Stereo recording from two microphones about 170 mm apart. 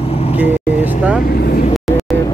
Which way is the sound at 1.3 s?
65° left (ahead or behind).